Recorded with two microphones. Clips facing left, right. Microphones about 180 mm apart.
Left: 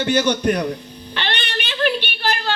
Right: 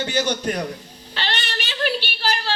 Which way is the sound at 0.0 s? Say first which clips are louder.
Left 5 dB; 60° left (ahead or behind).